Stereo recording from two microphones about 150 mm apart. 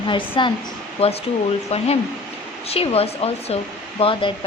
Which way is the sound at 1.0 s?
45° left (ahead or behind).